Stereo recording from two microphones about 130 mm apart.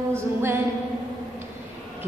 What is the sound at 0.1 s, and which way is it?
Music, 20° right (ahead or behind).